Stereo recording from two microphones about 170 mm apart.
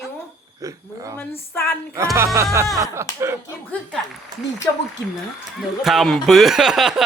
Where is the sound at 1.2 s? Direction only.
10° left (ahead or behind).